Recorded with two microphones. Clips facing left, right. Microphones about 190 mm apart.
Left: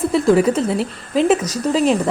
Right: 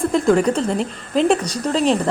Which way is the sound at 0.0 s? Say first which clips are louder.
Left 2 dB; 5° left (ahead or behind).